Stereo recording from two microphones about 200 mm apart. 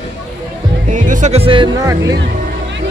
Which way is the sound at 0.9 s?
40° right (ahead or behind).